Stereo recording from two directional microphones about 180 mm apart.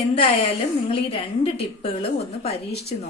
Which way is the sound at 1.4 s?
35° left (ahead or behind).